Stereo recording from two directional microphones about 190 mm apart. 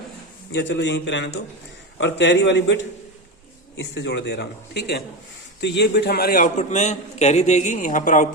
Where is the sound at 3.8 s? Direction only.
65° left (ahead or behind).